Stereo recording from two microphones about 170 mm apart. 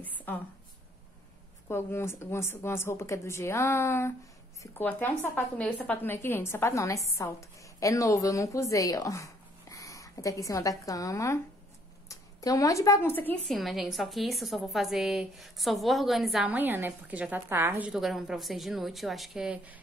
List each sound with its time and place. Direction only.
0.0 s a sound: 10° left (ahead or behind)
1.7 s a woman's voice: 15° left (ahead or behind)
13.5 s a woman's voice: centre (ahead or behind)